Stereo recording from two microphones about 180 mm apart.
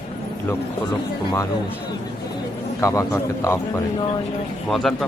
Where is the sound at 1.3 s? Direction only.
15° left (ahead or behind).